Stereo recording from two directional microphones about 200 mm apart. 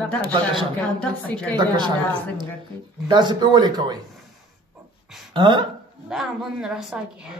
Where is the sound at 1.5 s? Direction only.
20° right (ahead or behind).